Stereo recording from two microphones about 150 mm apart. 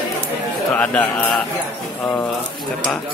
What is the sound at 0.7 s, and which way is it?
Speech, 10° left (ahead or behind).